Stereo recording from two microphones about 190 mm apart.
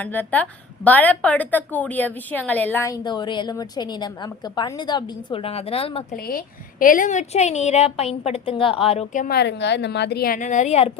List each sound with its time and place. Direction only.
0.0 s a woman's voice: 10° left (ahead or behind); by 6.1 s 30° left (ahead or behind)
6.1 s a woman's voice: 55° left (ahead or behind)
9.4 s a woman's voice: 65° left (ahead or behind); by 10.9 s 35° left (ahead or behind)